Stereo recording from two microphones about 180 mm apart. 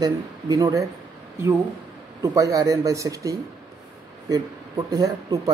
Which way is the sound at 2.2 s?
15° right (ahead or behind).